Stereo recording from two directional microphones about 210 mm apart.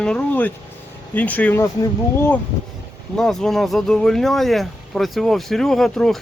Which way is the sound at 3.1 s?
5° left (ahead or behind).